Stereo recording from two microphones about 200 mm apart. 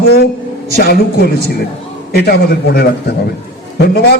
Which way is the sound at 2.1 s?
50° left (ahead or behind).